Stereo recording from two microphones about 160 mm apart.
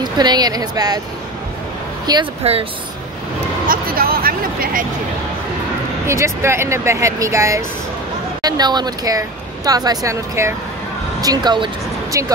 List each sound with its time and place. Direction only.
0.0 s speech: 25° right (ahead or behind)
2.1 s speech: 25° right (ahead or behind)
2.4 s speech: 40° right (ahead or behind)
3.6 s a sound: 65° right (ahead or behind)
6.0 s speech: 15° right (ahead or behind)